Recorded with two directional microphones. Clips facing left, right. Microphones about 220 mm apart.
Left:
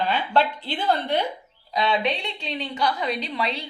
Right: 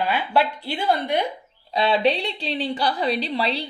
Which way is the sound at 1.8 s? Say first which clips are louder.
Right 4 dB; 30° right (ahead or behind).